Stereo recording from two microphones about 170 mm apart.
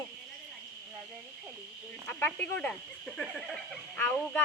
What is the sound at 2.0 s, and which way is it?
Speech, 10° left (ahead or behind).